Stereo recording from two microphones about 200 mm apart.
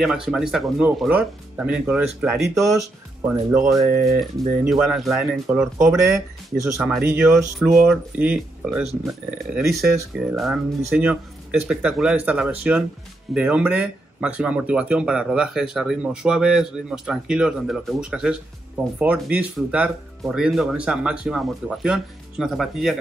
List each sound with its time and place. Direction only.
0.0 s speech: centre (ahead or behind)
2.5 s speech: 15° right (ahead or behind)
4.2 s speech: centre (ahead or behind)
7.5 s speech: centre (ahead or behind)